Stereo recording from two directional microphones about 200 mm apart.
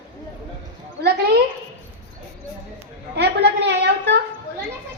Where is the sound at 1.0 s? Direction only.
55° right (ahead or behind).